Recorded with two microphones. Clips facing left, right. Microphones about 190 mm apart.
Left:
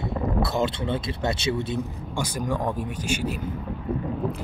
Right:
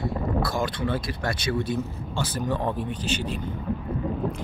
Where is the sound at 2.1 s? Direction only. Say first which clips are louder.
Even; 10° left (ahead or behind).